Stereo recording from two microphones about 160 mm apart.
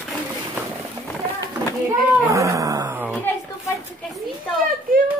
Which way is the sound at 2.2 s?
20° right (ahead or behind).